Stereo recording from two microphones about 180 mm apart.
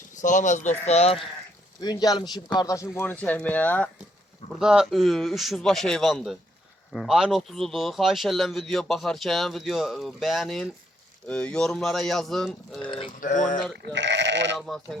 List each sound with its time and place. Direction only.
0.2 s speech: 45° left (ahead or behind)
1.8 s speech: 20° left (ahead or behind)
4.6 s speech: 5° right (ahead or behind)
13.1 s speech: 45° left (ahead or behind)
13.9 s speech: 80° right